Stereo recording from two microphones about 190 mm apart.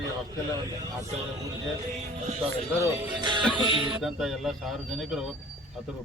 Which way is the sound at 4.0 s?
Centre (ahead or behind).